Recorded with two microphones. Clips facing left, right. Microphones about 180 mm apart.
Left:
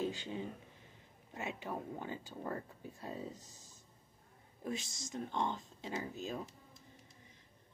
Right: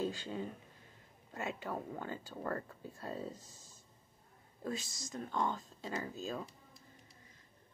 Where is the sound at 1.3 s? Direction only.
20° left (ahead or behind).